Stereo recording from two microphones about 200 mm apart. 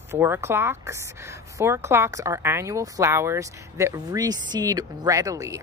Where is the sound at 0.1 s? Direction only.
10° right (ahead or behind).